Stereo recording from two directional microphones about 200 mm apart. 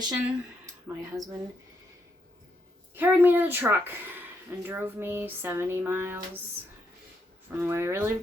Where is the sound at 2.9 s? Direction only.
10° right (ahead or behind).